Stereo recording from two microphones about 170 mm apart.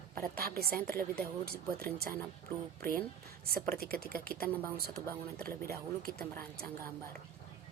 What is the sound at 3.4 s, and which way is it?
Speech, 65° right (ahead or behind).